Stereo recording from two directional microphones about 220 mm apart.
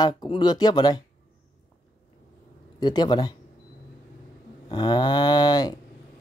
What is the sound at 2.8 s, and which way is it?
Speech, 20° left (ahead or behind).